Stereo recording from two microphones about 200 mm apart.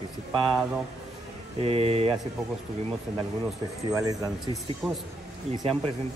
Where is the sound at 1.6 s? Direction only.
30° right (ahead or behind).